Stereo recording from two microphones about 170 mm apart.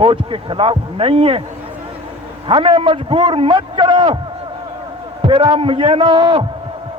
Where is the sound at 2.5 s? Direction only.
30° right (ahead or behind).